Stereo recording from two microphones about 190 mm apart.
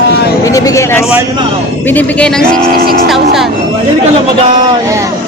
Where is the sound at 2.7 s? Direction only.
50° right (ahead or behind).